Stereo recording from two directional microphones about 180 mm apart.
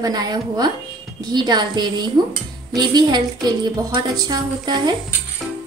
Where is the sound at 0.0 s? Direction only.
20° right (ahead or behind).